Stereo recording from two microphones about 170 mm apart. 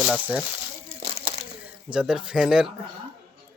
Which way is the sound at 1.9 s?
5° right (ahead or behind).